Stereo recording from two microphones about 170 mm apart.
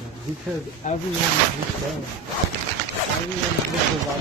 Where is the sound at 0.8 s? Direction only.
45° left (ahead or behind).